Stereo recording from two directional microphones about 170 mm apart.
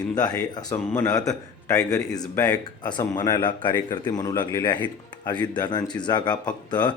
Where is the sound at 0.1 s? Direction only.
25° left (ahead or behind).